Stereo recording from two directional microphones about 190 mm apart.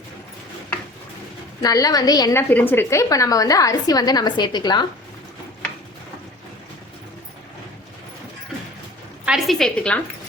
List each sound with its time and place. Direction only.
1.6 s a woman's voice: 20° left (ahead or behind)
2.5 s a woman's voice: 10° left (ahead or behind)
9.2 s a woman's voice: centre (ahead or behind)